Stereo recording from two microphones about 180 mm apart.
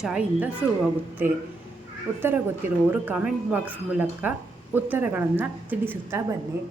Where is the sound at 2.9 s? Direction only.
10° right (ahead or behind).